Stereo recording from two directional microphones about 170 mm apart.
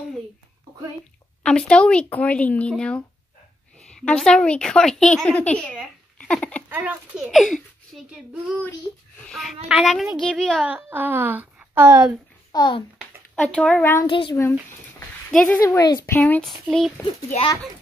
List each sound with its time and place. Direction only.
1.4 s speech: 5° left (ahead or behind)
4.0 s speech: 5° left (ahead or behind)
6.7 s a woman's voice: 10° right (ahead or behind)
10.6 s a woman's voice: 10° right (ahead or behind)
12.5 s a child's voice: 25° left (ahead or behind)
13.4 s speech: 5° left (ahead or behind)
14.0 s a child's voice: 30° left (ahead or behind)
15.3 s speech: 10° left (ahead or behind)
16.2 s speech: 10° left (ahead or behind)